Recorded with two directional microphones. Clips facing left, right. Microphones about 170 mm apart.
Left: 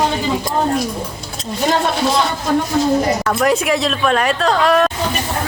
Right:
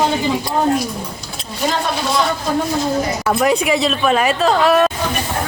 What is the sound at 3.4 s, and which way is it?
A woman's voice, centre (ahead or behind).